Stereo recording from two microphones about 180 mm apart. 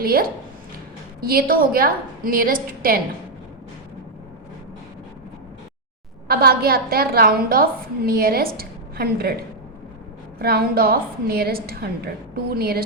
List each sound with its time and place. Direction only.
0.0 s a woman's voice: 55° right (ahead or behind)
6.2 s a woman's voice: 60° right (ahead or behind)